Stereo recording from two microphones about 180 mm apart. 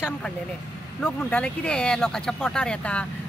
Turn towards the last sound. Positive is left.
turn(degrees=5)  # may be behind; listen again after turning